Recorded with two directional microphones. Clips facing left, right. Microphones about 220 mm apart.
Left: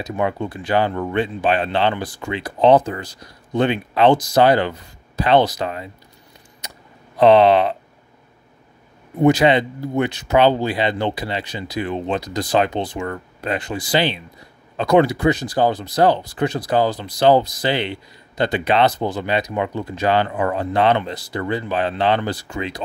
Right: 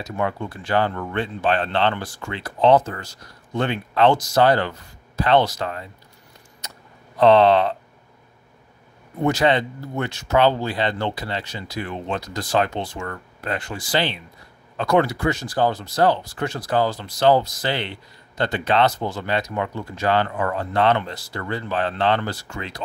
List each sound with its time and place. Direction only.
0.0 s speech: 20° left (ahead or behind)
6.6 s a sound: 15° left (ahead or behind)
7.2 s speech: 15° left (ahead or behind)
9.2 s speech: 15° left (ahead or behind)